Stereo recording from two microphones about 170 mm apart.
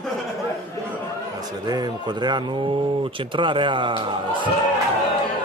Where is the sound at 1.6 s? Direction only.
25° right (ahead or behind).